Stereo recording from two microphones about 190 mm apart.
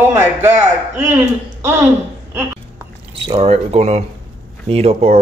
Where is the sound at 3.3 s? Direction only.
30° right (ahead or behind).